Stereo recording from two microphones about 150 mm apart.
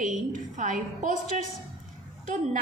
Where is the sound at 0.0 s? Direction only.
55° right (ahead or behind).